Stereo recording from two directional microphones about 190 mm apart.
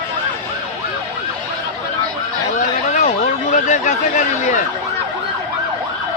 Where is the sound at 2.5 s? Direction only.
40° left (ahead or behind).